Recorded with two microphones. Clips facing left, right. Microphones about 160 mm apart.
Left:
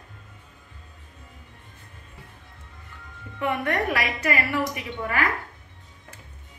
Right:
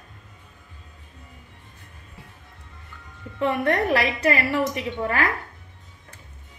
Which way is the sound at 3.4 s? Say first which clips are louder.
Right 3 dB; 30° right (ahead or behind).